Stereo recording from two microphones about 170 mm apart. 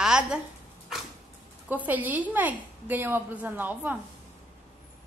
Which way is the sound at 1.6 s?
10° right (ahead or behind).